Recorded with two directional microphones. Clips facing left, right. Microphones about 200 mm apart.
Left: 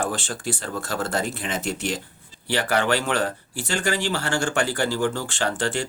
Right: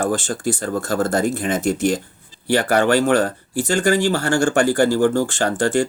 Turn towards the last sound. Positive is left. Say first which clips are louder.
# right 7 dB
turn(degrees=-45)  # may be behind; listen again after turning